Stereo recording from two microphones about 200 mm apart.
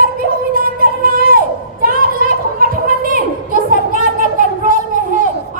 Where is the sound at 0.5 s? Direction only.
45° right (ahead or behind).